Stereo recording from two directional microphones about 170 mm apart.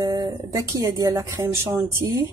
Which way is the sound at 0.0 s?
20° right (ahead or behind).